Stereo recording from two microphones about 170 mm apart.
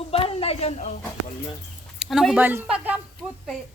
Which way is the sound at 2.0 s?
Centre (ahead or behind).